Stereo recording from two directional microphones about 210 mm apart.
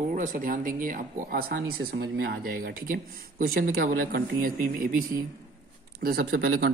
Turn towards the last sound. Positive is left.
turn(degrees=-45)  # may be behind; listen again after turning